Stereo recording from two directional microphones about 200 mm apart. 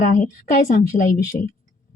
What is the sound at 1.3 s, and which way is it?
Speech, 45° left (ahead or behind).